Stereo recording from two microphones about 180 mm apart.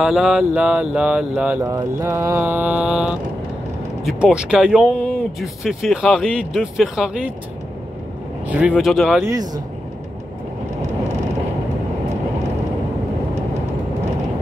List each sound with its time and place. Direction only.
0.0 s mantra: 5° right (ahead or behind)
4.0 s speech: 5° right (ahead or behind)
8.5 s speech: 5° right (ahead or behind)
9.2 s speech: 20° right (ahead or behind)